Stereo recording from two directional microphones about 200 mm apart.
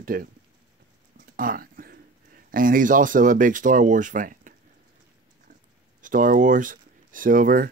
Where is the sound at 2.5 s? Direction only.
45° right (ahead or behind).